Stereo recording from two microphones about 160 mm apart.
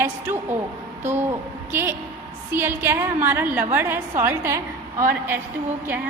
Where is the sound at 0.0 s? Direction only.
10° right (ahead or behind).